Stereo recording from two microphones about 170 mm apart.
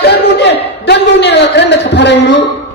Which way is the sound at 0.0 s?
80° left.